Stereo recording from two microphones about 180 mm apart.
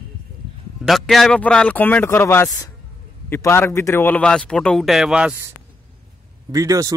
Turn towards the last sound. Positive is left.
turn(degrees=-20)  # may be behind; listen again after turning